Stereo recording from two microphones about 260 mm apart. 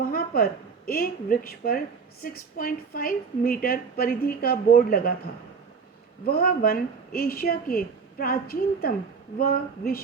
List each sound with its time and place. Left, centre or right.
0.0 s a woman's voice: left
6.2 s a woman's voice: left